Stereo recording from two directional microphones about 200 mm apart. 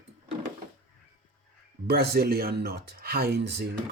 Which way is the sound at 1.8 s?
50° right (ahead or behind).